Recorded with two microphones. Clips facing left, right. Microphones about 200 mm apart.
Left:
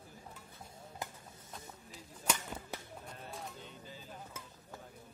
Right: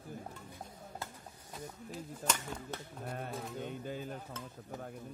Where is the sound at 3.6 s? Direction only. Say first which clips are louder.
Right 11 dB; 55° right (ahead or behind).